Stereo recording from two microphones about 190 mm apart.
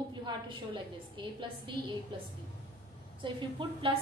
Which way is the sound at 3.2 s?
25° right (ahead or behind).